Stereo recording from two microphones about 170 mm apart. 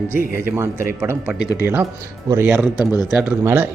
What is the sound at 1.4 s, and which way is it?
Speech, 20° left (ahead or behind).